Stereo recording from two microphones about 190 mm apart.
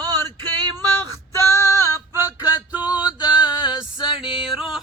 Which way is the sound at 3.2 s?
5° right (ahead or behind).